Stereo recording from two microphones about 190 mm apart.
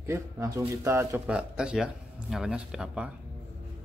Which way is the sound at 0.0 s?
15° right (ahead or behind).